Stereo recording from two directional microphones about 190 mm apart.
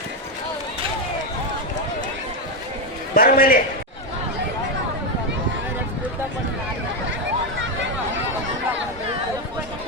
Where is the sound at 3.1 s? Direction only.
50° left (ahead or behind).